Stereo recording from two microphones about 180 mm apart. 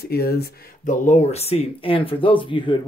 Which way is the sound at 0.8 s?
40° left (ahead or behind).